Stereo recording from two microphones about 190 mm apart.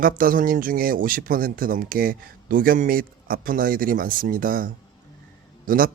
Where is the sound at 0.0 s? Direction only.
50° right (ahead or behind).